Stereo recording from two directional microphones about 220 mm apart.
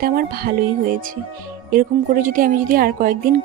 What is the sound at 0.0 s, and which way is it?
Speech, 40° right (ahead or behind).